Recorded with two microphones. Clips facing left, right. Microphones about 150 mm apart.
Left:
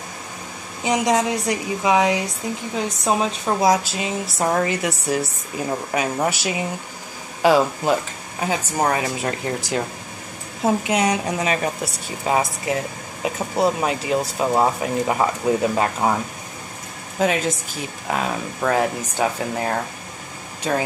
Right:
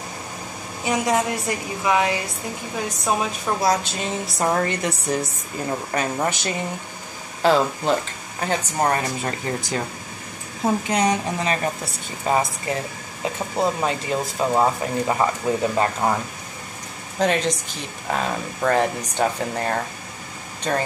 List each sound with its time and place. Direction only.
0.8 s a woman's voice: 20° left (ahead or behind)
3.8 s a woman's voice: 5° left (ahead or behind)
10.9 s a woman's voice: 5° left (ahead or behind)
17.2 s a woman's voice: 5° left (ahead or behind)